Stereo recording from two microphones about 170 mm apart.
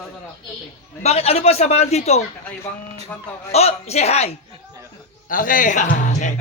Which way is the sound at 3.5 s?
40° left (ahead or behind).